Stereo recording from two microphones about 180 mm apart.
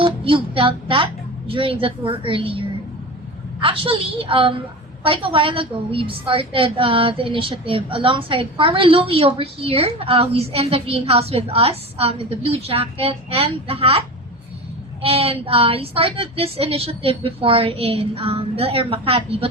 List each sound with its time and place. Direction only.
0.0 s a woman's voice: 30° right (ahead or behind)
15.0 s a woman's voice: 30° right (ahead or behind)